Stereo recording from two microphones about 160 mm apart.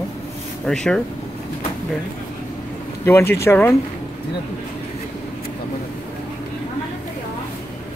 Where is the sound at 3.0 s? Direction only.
15° left (ahead or behind).